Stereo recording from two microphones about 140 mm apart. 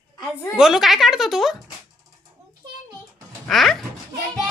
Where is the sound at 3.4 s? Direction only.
Centre (ahead or behind).